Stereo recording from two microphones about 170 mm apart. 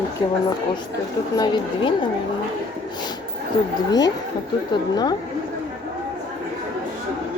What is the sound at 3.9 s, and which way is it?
Speech, 25° left (ahead or behind).